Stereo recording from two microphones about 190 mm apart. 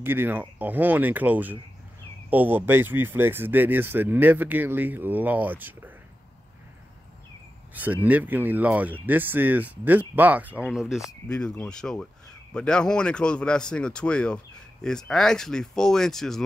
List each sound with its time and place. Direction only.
0.0 s speech: 10° right (ahead or behind)
7.7 s speech: 10° right (ahead or behind)